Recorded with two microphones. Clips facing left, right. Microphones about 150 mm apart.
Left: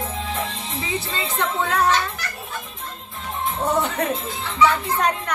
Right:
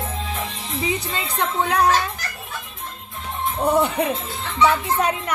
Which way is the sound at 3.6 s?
10° right (ahead or behind).